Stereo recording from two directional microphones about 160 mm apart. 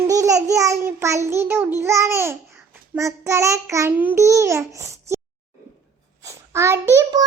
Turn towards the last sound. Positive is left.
turn(degrees=-20)  # may be behind; listen again after turning